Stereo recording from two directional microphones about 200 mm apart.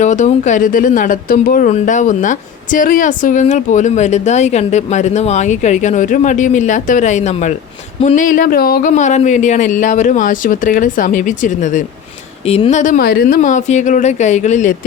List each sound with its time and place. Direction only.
0.0 s speech: 35° left (ahead or behind)